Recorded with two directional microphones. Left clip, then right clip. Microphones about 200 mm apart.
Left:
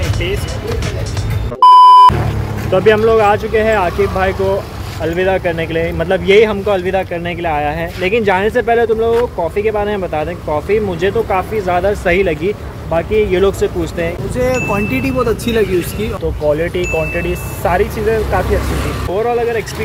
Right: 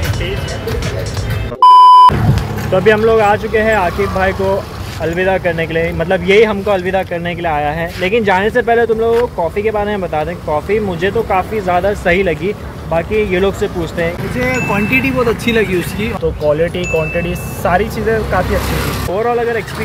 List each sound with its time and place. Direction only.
1.6 s beep: centre (ahead or behind)
2.7 s speech: 15° left (ahead or behind)
14.9 s speech: 50° left (ahead or behind)
15.5 s speech: 10° left (ahead or behind)